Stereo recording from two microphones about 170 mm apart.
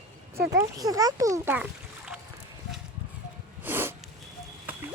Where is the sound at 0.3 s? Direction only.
20° right (ahead or behind).